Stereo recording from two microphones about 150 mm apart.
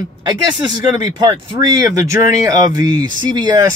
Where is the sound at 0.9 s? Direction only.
30° right (ahead or behind).